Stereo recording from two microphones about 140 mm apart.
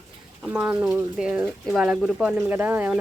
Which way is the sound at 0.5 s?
10° right (ahead or behind).